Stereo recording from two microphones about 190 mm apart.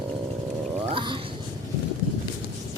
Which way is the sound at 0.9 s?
25° right (ahead or behind).